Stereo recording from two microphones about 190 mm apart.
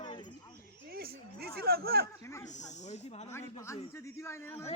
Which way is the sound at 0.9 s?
55° right (ahead or behind).